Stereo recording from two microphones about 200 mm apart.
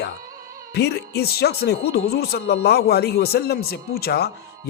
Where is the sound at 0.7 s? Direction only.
55° left (ahead or behind).